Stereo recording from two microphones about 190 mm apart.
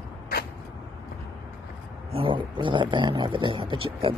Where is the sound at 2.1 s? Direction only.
25° right (ahead or behind).